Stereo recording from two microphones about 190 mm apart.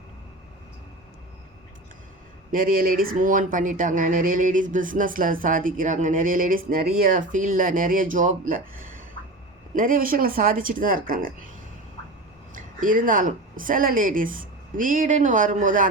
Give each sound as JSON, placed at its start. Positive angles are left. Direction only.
{"t": 2.5, "sound": "speech", "side_deg": -45}
{"t": 12.5, "sound": "speech", "side_deg": -45}